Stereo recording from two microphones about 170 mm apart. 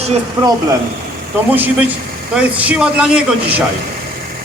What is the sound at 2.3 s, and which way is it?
Speech, 5° right (ahead or behind).